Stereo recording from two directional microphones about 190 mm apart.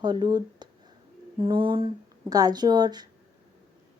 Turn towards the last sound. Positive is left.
turn(degrees=-20)  # may be behind; listen again after turning